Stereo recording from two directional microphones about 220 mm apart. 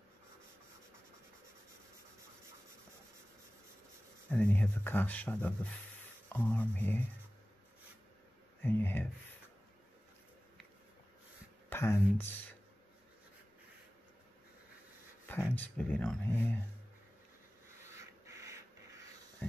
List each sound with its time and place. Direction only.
4.3 s speech: 5° left (ahead or behind)
8.6 s speech: 10° left (ahead or behind)
11.7 s speech: 10° left (ahead or behind)
15.2 s speech: 10° left (ahead or behind)
17.9 s a sound: 15° right (ahead or behind)